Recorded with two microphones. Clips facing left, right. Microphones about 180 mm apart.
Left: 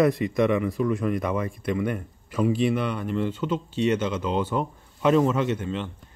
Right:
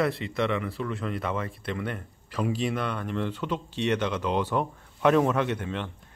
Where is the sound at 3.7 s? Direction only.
65° right (ahead or behind).